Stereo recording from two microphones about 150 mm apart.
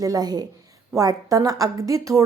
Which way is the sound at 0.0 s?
25° right (ahead or behind).